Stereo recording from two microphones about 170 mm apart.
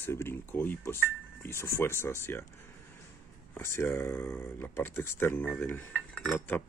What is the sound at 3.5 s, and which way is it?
Cutlery, 15° left (ahead or behind).